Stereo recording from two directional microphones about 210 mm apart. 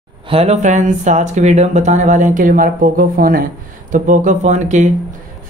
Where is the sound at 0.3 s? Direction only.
30° right (ahead or behind).